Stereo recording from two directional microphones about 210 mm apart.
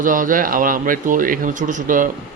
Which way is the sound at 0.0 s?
40° right (ahead or behind).